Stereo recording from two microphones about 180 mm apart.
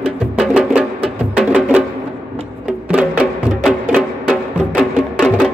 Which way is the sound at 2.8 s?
5° right (ahead or behind).